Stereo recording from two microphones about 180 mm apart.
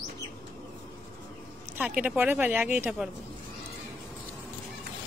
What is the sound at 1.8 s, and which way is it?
A woman's voice, 5° right (ahead or behind).